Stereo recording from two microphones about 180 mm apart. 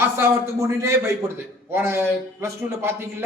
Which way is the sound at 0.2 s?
15° right (ahead or behind).